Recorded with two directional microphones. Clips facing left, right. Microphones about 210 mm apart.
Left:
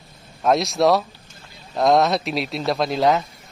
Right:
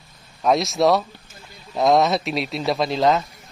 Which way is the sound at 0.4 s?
Centre (ahead or behind).